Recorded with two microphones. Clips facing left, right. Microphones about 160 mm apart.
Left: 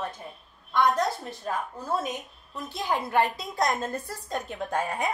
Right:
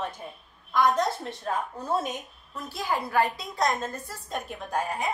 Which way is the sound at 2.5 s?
20° left (ahead or behind).